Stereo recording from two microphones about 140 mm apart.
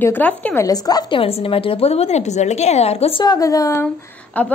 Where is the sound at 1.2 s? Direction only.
40° left (ahead or behind).